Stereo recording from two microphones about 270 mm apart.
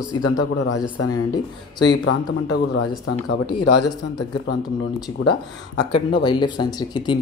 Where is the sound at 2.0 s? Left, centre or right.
Left.